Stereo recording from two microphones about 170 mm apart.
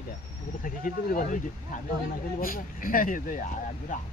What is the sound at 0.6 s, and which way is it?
Speech, 55° left (ahead or behind).